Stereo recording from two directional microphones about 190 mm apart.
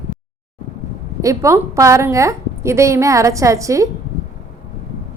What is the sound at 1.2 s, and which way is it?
A woman's voice, 15° right (ahead or behind).